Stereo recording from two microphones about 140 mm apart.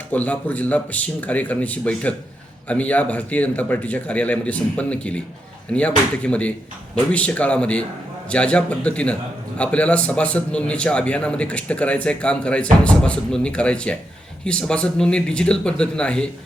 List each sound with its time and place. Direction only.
0.1 s a man's voice: 10° left (ahead or behind)